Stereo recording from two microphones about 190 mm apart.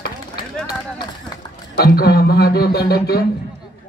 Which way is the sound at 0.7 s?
20° left (ahead or behind).